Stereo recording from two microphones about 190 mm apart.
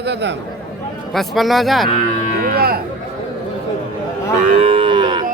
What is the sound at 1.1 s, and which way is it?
Speech, centre (ahead or behind).